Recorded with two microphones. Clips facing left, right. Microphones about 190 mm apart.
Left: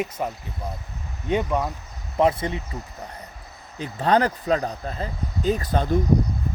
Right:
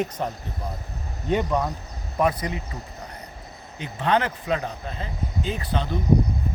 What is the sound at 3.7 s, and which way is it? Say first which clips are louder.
Speech: left 3 dB; 35° left (ahead or behind).